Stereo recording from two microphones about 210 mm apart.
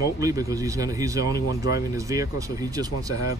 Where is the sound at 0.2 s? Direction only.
15° right (ahead or behind).